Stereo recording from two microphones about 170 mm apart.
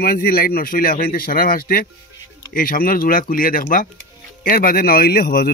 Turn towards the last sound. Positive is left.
turn(degrees=65)  # may be behind; listen again after turning